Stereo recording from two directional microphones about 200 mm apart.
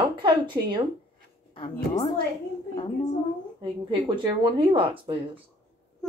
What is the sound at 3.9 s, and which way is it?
Speech, 20° right (ahead or behind).